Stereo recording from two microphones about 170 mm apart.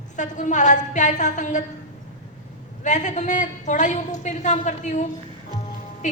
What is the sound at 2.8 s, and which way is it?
A woman's voice, 45° left (ahead or behind).